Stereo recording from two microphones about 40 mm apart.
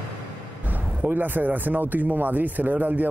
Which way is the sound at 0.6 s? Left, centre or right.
Right.